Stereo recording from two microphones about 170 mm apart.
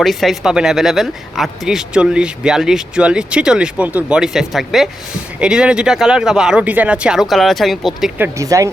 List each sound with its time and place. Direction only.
0.0 s speech: centre (ahead or behind)
8.4 s speech: 20° right (ahead or behind)